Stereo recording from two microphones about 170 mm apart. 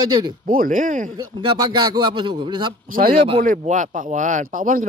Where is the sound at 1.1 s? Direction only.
25° right (ahead or behind).